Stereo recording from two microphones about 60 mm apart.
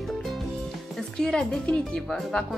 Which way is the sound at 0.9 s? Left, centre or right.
Centre.